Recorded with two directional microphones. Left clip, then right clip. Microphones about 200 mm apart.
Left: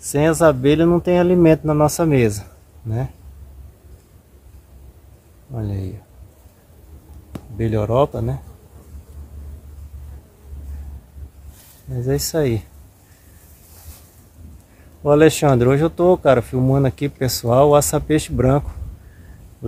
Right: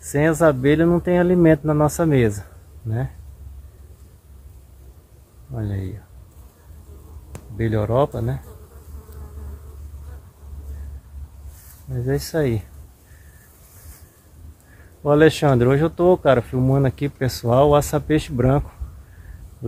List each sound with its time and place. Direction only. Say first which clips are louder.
0.1 s speech: left 2 dB; 5° right (ahead or behind)
5.5 s speech: left 1 dB; centre (ahead or behind)
7.5 s speech: left 2 dB; 5° left (ahead or behind)
11.9 s speech: left 2 dB; 5° right (ahead or behind)
12.3 s speech: left 2 dB; 5° left (ahead or behind)
15.0 s speech: left 2 dB; 5° left (ahead or behind)